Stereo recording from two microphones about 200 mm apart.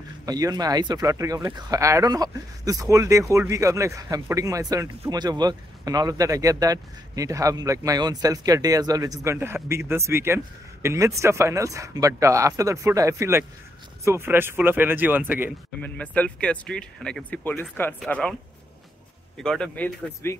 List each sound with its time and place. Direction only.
0.2 s speech: 20° right (ahead or behind)
15.8 s speech: 5° left (ahead or behind)
19.3 s speech: 5° left (ahead or behind)